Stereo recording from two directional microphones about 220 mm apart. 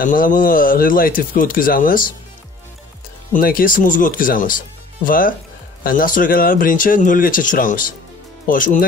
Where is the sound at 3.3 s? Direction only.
40° left (ahead or behind).